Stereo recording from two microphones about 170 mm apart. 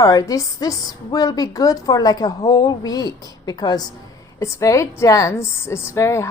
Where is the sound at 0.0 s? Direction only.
20° left (ahead or behind).